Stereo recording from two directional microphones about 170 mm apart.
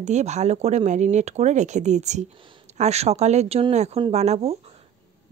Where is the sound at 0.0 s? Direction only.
40° right (ahead or behind).